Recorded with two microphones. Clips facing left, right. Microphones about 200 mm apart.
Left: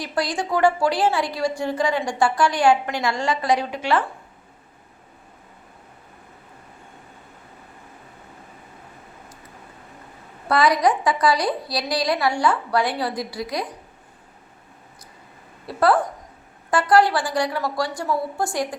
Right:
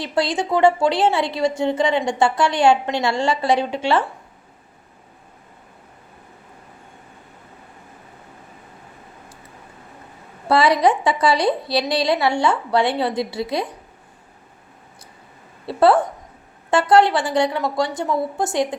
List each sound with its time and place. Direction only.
0.0 s a woman's voice: 25° right (ahead or behind)
10.5 s a woman's voice: 25° right (ahead or behind)
15.6 s a woman's voice: 25° right (ahead or behind)